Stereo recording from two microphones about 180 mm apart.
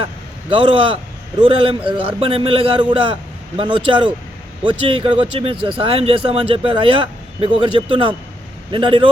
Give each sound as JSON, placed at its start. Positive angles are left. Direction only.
{"t": 0.5, "sound": "a man's voice", "side_deg": -30}